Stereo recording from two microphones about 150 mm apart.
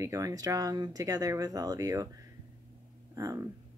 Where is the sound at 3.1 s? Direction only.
20° right (ahead or behind).